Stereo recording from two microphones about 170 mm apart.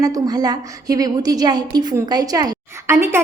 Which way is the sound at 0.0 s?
20° right (ahead or behind).